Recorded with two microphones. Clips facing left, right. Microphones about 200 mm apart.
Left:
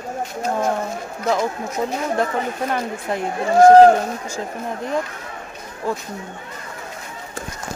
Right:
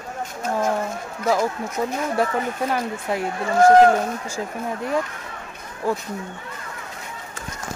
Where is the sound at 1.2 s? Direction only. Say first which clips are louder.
Even; 5° right (ahead or behind).